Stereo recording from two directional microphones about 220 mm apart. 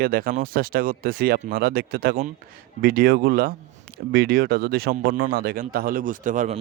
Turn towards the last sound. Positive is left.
turn(degrees=-35)  # may be behind; listen again after turning